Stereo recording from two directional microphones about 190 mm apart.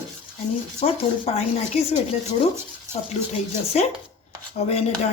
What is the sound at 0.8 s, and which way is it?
Speech, 30° left (ahead or behind).